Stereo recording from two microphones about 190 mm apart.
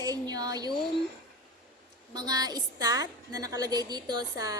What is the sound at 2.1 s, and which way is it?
A woman's voice, 20° right (ahead or behind).